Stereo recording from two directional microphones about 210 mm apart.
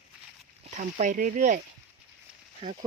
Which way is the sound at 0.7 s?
35° right (ahead or behind).